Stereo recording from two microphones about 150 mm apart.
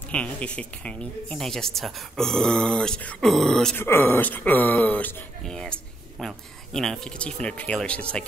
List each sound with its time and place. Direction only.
0.1 s speech: 10° left (ahead or behind)